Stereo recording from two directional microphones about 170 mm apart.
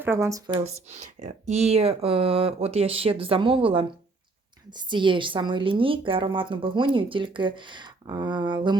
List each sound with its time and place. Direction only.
0.0 s speech: 15° right (ahead or behind)
0.5 s a woman's voice: 40° right (ahead or behind)